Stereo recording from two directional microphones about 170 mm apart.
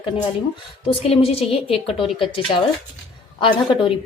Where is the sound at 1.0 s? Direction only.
35° left (ahead or behind).